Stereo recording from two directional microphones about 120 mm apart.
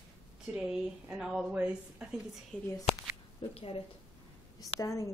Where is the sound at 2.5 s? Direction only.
10° left (ahead or behind).